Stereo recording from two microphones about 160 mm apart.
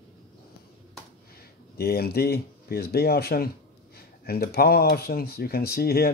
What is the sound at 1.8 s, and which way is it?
A man's voice, 75° left (ahead or behind).